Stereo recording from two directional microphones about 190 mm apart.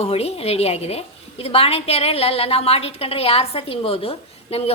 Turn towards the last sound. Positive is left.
turn(degrees=30)  # may be behind; listen again after turning